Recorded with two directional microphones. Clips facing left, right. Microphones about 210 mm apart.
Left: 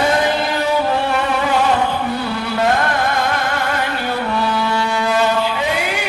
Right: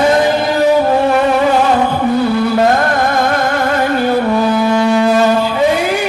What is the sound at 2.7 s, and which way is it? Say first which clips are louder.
Music: right 5 dB; 45° right (ahead or behind).